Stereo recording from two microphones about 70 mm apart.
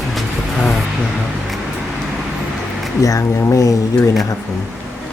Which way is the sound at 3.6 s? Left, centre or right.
Left.